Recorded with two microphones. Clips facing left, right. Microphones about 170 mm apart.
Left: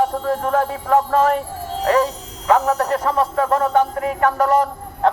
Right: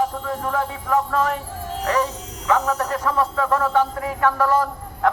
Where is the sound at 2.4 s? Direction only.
35° left (ahead or behind).